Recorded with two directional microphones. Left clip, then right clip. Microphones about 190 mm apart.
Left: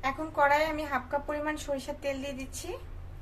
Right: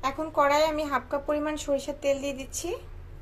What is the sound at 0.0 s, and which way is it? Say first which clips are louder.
A woman's voice: right 2 dB; 30° right (ahead or behind).